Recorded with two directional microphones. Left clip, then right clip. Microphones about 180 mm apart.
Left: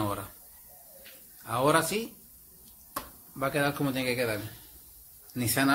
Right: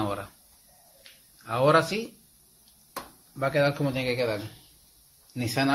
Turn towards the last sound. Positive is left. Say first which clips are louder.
# right 1 dB
turn(degrees=20)  # may be behind; listen again after turning